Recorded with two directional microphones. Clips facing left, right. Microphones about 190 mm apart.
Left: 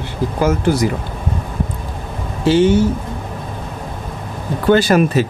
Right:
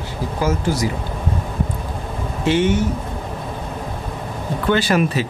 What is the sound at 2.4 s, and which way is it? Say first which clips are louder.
Speech: left 5 dB; 30° left (ahead or behind).